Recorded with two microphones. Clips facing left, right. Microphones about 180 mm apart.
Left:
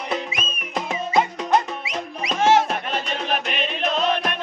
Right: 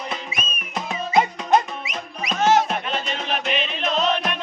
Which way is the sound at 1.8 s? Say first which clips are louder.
Left 2 dB; 30° left (ahead or behind).